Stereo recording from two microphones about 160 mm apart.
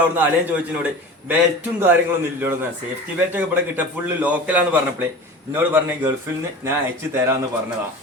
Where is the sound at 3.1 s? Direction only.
10° right (ahead or behind).